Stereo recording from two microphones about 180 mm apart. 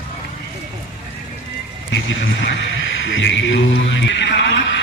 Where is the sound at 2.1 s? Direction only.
90° left.